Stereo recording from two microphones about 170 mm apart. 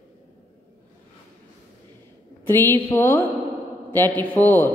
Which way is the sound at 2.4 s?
15° left (ahead or behind).